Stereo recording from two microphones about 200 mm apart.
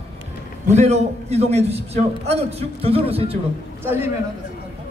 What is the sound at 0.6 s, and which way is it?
A man's voice, 35° right (ahead or behind).